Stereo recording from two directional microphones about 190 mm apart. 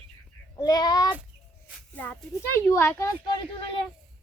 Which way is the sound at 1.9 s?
10° left (ahead or behind).